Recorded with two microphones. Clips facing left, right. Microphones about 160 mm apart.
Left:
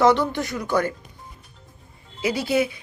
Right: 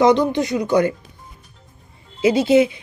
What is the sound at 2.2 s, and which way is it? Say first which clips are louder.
Speech: right 8 dB; 20° right (ahead or behind).